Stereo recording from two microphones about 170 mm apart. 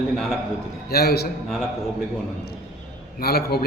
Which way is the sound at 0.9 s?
65° left (ahead or behind).